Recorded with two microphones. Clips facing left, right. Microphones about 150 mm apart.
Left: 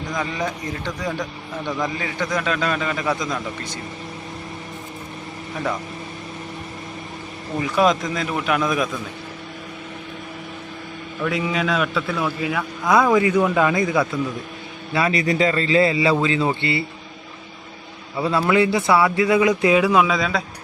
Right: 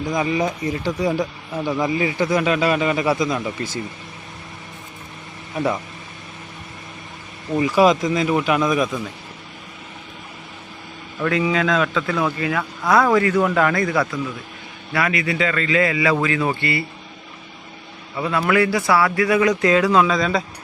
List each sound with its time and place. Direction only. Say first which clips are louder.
0.1 s a man's voice: right 5 dB; 10° right (ahead or behind)
7.6 s a man's voice: right 3 dB; centre (ahead or behind)
11.2 s a man's voice: right 3 dB; 5° left (ahead or behind)
12.9 s a man's voice: even; 15° left (ahead or behind)
14.1 s a man's voice: left 2 dB; 25° left (ahead or behind)
18.2 s a man's voice: left 1 dB; 25° left (ahead or behind); by 20.4 s centre (ahead or behind)